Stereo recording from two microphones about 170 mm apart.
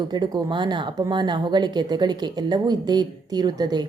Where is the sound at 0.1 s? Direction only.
25° right (ahead or behind).